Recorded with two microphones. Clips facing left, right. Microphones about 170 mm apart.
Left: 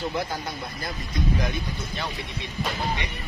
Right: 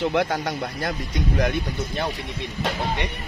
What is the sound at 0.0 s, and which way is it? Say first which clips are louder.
Speech: right 7 dB; 90° right.